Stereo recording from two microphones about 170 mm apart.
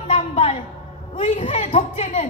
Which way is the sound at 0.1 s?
40° left (ahead or behind).